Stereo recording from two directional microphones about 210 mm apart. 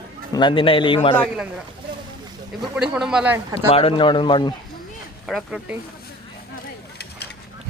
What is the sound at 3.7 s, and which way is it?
Speech, 30° left (ahead or behind).